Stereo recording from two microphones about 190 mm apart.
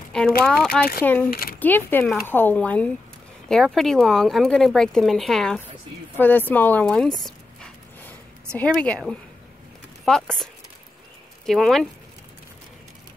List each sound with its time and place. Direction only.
0.4 s speech: 5° left (ahead or behind)
1.3 s a sound: 50° left (ahead or behind)
1.6 s speech: 10° left (ahead or behind)
6.1 s dog: 10° left (ahead or behind)
8.5 s speech: 5° left (ahead or behind)